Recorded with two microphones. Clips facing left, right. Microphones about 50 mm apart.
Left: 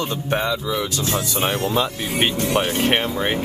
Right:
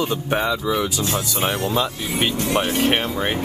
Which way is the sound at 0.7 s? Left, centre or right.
Centre.